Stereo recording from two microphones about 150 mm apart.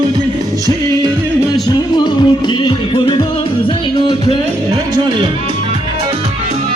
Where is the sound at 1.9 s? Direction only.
30° left (ahead or behind).